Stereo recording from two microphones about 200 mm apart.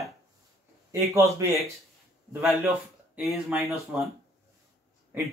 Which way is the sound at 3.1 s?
Centre (ahead or behind).